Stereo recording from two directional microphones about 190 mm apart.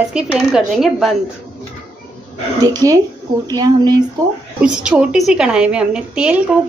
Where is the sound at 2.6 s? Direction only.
20° right (ahead or behind).